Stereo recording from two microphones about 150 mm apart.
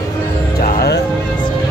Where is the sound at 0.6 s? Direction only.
80° left.